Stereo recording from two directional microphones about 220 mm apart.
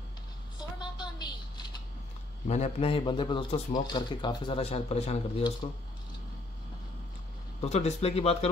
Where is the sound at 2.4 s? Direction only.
30° left (ahead or behind).